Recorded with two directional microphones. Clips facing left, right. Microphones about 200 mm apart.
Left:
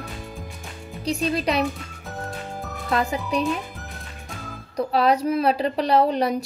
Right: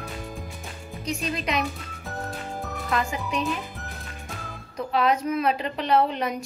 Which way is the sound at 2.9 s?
35° left (ahead or behind).